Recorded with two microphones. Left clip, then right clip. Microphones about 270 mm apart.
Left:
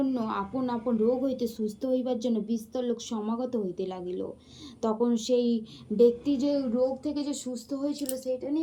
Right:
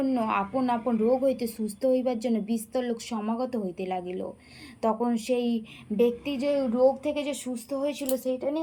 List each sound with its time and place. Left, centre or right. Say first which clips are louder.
0.0 s a woman's voice: right 4 dB; right